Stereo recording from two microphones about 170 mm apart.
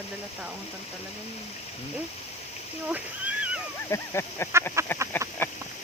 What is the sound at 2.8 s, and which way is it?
Cat, 10° right (ahead or behind).